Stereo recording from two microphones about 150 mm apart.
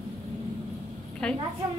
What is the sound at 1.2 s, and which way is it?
Speech, 5° left (ahead or behind).